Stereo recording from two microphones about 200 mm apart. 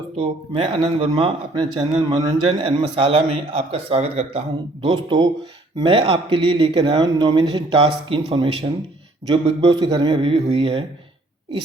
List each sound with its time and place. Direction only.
0.2 s speech: 30° right (ahead or behind)